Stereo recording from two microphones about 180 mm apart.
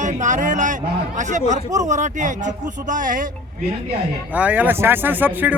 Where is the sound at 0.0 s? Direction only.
45° right (ahead or behind).